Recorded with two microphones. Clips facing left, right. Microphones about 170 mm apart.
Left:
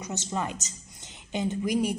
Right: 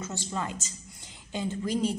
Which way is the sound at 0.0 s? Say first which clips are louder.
Left 2 dB; 20° left (ahead or behind).